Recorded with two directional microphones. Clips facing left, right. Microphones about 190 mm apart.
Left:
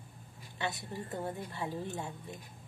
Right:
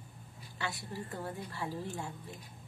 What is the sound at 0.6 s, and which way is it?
A woman's voice, 20° left (ahead or behind).